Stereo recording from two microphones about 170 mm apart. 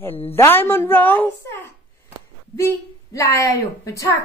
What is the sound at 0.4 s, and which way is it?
A woman's voice, 15° left (ahead or behind).